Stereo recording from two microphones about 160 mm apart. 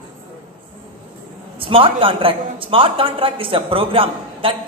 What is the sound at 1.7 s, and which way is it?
A man's voice, 35° right (ahead or behind).